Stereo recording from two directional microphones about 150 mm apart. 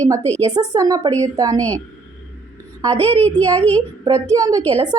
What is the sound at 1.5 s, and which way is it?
Speech, 10° left (ahead or behind).